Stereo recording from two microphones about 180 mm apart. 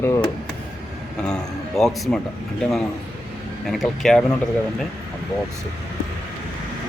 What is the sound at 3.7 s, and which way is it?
Speech, centre (ahead or behind).